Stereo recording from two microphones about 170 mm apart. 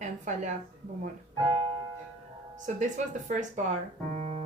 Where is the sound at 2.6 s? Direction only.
45° right (ahead or behind).